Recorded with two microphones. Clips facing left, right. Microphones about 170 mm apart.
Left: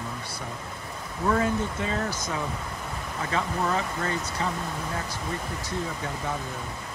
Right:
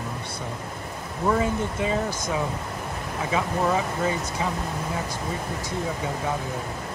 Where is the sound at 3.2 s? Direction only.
10° right (ahead or behind).